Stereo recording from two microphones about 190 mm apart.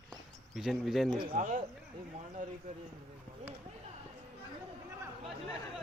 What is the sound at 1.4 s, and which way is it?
Speech, 40° right (ahead or behind).